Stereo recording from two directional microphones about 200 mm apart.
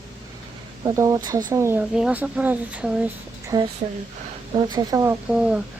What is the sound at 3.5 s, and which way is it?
Speech, 20° right (ahead or behind).